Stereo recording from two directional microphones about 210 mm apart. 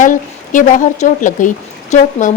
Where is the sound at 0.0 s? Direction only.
35° left (ahead or behind).